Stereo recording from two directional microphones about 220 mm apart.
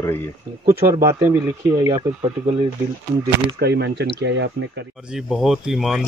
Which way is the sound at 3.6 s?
50° right (ahead or behind).